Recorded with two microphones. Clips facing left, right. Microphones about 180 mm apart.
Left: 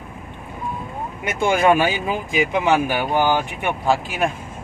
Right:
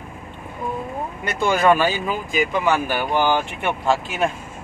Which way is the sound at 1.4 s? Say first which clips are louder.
Left 1 dB; 20° left (ahead or behind).